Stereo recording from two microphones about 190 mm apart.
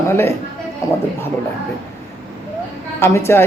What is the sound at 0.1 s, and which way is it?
Speech, 10° left (ahead or behind).